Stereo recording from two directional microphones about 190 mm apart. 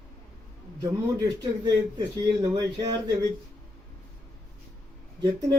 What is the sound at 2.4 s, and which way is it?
Speech, 20° right (ahead or behind).